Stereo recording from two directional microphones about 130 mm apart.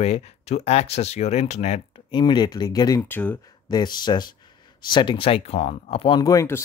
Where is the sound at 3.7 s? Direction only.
35° left (ahead or behind).